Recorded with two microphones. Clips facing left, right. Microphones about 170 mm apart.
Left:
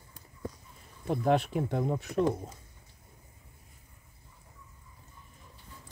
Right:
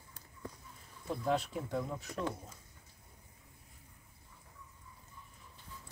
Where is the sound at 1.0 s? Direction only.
65° left (ahead or behind).